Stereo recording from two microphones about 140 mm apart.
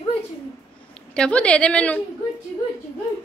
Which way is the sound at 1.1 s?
5° left (ahead or behind).